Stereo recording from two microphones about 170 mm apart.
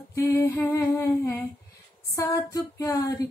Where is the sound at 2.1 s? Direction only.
20° left (ahead or behind).